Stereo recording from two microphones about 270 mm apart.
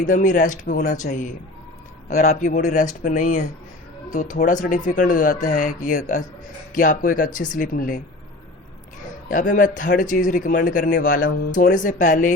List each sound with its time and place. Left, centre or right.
0.0 s speech: left
9.3 s speech: left